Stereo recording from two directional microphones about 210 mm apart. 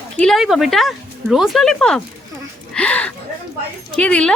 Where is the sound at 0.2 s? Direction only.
Centre (ahead or behind).